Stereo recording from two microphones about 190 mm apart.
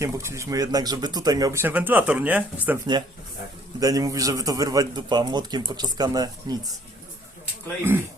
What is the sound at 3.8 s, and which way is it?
A man's voice, 20° right (ahead or behind).